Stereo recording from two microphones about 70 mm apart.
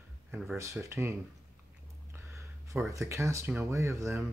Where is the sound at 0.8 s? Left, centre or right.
Right.